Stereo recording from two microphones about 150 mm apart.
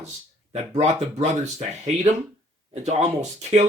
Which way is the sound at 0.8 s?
45° right (ahead or behind).